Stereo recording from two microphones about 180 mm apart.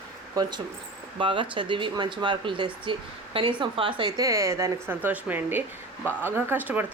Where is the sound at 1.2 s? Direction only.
25° right (ahead or behind).